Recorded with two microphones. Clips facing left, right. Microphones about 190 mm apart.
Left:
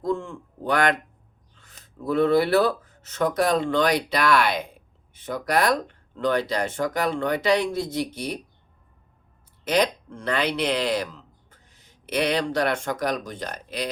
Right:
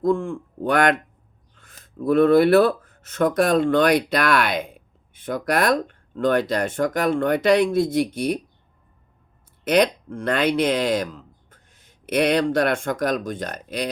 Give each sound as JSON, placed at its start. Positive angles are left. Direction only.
{"t": 0.0, "sound": "speech", "side_deg": -55}
{"t": 9.6, "sound": "speech", "side_deg": -55}